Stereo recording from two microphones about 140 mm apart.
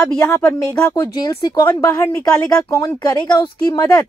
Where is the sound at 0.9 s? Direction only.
25° left (ahead or behind).